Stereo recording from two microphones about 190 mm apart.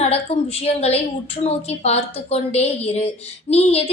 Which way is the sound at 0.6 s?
35° left (ahead or behind).